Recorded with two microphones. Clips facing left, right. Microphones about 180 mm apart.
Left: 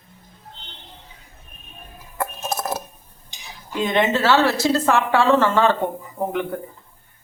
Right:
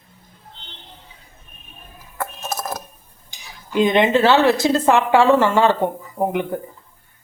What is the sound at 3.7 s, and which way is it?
A woman's voice, 15° right (ahead or behind).